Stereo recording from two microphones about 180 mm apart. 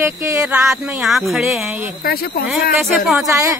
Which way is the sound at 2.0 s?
60° left (ahead or behind).